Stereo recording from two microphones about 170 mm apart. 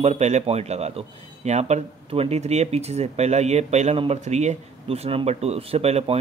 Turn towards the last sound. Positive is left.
turn(degrees=-40)  # may be behind; listen again after turning